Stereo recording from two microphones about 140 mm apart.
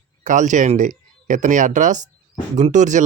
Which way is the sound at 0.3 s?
65° right (ahead or behind).